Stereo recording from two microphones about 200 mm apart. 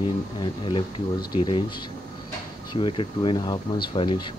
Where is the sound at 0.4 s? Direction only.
25° left (ahead or behind).